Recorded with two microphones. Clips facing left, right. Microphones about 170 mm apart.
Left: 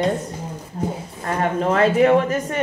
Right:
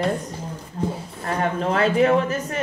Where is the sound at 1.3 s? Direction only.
40° left (ahead or behind).